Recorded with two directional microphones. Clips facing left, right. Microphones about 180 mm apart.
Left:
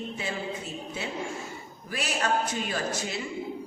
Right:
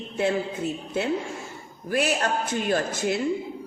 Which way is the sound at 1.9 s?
55° right (ahead or behind).